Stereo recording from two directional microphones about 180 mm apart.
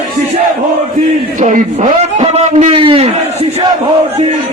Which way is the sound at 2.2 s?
30° right (ahead or behind).